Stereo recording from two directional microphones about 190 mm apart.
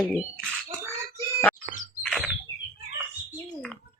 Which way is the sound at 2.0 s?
Centre (ahead or behind).